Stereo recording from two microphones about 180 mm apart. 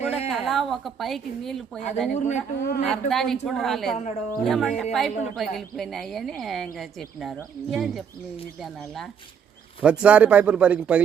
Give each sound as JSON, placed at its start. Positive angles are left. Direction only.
{"t": 0.3, "sound": "a woman's voice", "side_deg": 0}
{"t": 2.1, "sound": "speech", "side_deg": 40}
{"t": 2.6, "sound": "speech", "side_deg": 60}
{"t": 2.9, "sound": "a woman's voice", "side_deg": 0}
{"t": 3.9, "sound": "speech", "side_deg": 40}
{"t": 4.4, "sound": "a woman's voice", "side_deg": 0}
{"t": 7.7, "sound": "a woman's voice", "side_deg": 0}
{"t": 9.8, "sound": "speech", "side_deg": -5}